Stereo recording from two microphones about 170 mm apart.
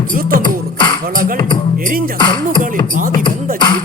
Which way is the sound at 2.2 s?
25° left (ahead or behind).